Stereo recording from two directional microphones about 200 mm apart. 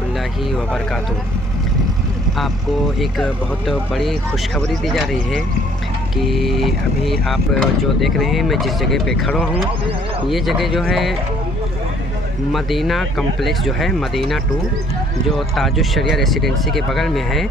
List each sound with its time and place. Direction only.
3.0 s speech: centre (ahead or behind)
12.5 s speech: centre (ahead or behind)